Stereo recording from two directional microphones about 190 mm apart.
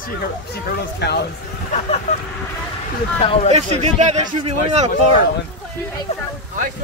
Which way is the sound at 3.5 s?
35° right (ahead or behind).